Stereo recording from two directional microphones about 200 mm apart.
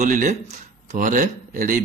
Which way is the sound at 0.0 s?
40° right (ahead or behind).